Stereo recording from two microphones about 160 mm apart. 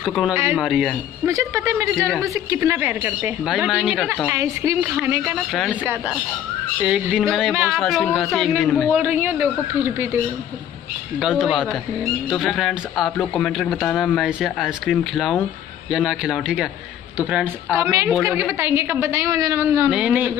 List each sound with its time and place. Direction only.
0.0 s speech: centre (ahead or behind)
1.2 s a woman's voice: 20° right (ahead or behind); by 4.3 s 5° right (ahead or behind)
4.3 s a woman's voice: 15° right (ahead or behind)
5.5 s speech: centre (ahead or behind)
6.8 s speech: 5° right (ahead or behind)
8.9 s a woman's voice: 10° right (ahead or behind)
11.1 s a woman's voice: centre (ahead or behind)